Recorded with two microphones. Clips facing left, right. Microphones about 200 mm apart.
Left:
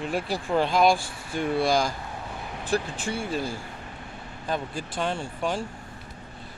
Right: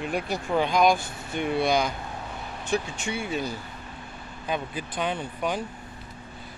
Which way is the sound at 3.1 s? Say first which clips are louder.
Even; centre (ahead or behind).